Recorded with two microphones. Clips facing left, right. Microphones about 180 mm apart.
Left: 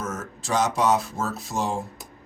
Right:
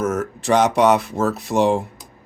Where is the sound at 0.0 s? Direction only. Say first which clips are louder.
Right 11 dB; 65° right (ahead or behind).